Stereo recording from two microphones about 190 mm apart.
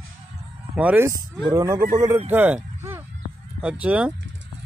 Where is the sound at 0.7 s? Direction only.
5° right (ahead or behind).